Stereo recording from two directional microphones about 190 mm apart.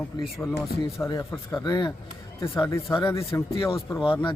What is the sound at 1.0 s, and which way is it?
A man's voice, 15° left (ahead or behind).